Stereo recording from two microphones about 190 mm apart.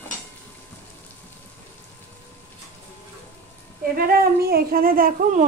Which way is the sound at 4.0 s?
55° right (ahead or behind).